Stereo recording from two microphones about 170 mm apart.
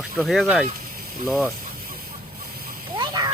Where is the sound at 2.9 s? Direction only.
25° right (ahead or behind).